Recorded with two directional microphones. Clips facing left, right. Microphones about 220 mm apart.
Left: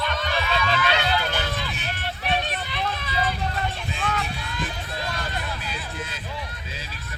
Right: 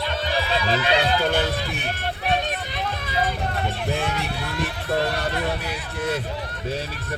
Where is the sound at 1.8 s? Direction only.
40° right (ahead or behind).